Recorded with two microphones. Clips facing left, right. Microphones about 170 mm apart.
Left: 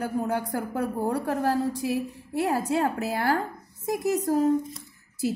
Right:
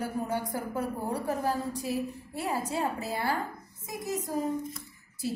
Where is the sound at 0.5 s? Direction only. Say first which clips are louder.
Left 4 dB; 65° left (ahead or behind).